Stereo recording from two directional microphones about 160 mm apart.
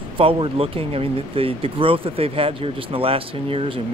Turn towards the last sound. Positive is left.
turn(degrees=-35)  # may be behind; listen again after turning